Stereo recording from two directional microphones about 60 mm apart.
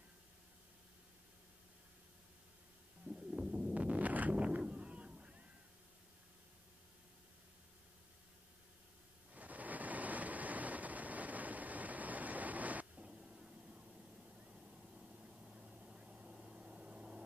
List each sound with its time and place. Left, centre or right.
3.1 s stomach rumble: centre
3.7 s a sound: right
9.3 s vehicle: right